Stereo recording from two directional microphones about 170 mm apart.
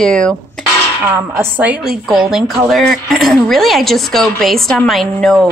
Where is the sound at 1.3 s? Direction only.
10° right (ahead or behind).